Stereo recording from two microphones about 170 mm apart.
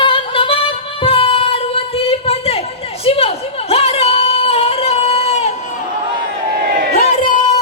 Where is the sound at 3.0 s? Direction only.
35° left (ahead or behind).